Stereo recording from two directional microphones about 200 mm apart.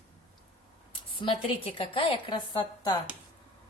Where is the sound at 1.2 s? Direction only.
25° left (ahead or behind).